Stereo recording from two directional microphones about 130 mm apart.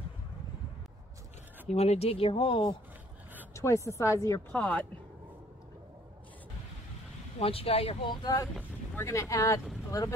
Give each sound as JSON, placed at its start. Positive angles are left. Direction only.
{"t": 1.7, "sound": "speech", "side_deg": 55}
{"t": 3.5, "sound": "a woman's voice", "side_deg": 25}
{"t": 4.5, "sound": "speech", "side_deg": 10}
{"t": 7.3, "sound": "speech", "side_deg": 45}
{"t": 8.1, "sound": "a woman's voice", "side_deg": 30}